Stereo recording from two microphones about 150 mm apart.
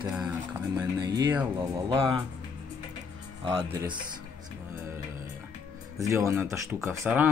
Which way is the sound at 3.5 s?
25° right (ahead or behind).